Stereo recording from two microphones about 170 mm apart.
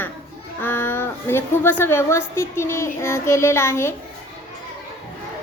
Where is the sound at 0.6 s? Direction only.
15° left (ahead or behind).